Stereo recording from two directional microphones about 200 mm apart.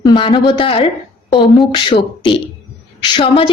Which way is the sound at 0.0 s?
25° left (ahead or behind).